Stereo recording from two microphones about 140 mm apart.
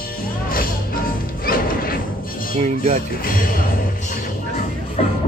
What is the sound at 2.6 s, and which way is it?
Speech, 55° right (ahead or behind).